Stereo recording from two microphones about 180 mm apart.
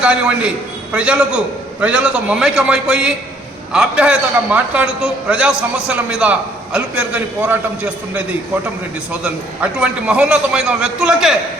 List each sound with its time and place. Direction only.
0.0 s a man's voice: 5° right (ahead or behind)
9.2 s a man's voice: 5° right (ahead or behind)